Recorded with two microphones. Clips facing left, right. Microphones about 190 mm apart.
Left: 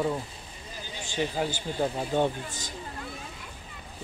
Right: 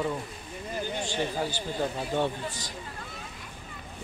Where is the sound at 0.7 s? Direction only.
55° right (ahead or behind).